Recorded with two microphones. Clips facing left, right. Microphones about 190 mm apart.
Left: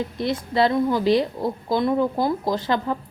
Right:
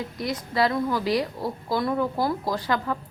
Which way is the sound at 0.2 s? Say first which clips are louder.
Left 3 dB; 25° left (ahead or behind).